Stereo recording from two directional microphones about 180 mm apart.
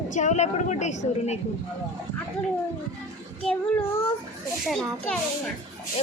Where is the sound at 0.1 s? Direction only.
40° left (ahead or behind).